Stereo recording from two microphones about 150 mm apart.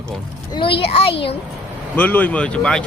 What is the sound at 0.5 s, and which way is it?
Speech, 35° left (ahead or behind).